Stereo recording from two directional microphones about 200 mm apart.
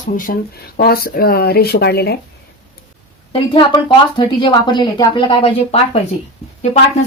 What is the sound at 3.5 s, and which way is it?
Speech, 25° left (ahead or behind).